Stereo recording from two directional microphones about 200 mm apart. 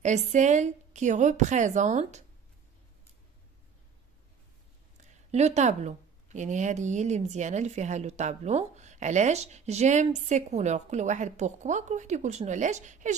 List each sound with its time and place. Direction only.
0.0 s a woman's voice: 35° right (ahead or behind)
5.3 s a woman's voice: 35° right (ahead or behind)